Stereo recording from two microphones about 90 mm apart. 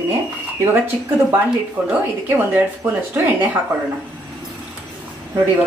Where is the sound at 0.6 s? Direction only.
20° right (ahead or behind).